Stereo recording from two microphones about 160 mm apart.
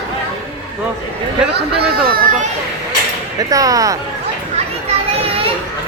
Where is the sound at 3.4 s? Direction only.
20° right (ahead or behind).